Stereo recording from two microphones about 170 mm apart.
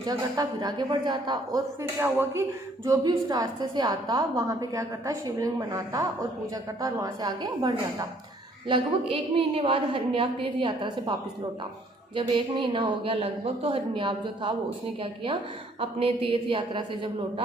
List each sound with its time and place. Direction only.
0.0 s a woman's voice: 20° right (ahead or behind)
12.1 s a woman's voice: 30° right (ahead or behind)